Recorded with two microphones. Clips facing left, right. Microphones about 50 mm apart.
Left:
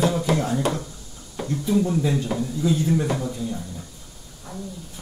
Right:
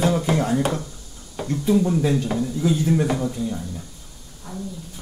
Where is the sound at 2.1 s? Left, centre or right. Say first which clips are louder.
Right 2 dB; centre.